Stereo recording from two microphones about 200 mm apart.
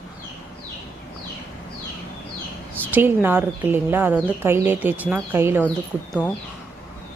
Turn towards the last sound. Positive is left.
turn(degrees=5)  # may be behind; listen again after turning